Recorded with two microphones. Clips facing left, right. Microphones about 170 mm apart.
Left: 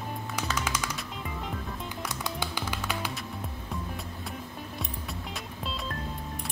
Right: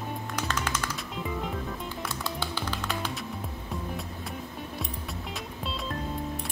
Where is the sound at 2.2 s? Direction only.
15° left (ahead or behind).